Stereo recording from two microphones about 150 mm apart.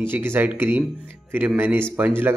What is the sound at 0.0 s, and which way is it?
Speech, 15° right (ahead or behind).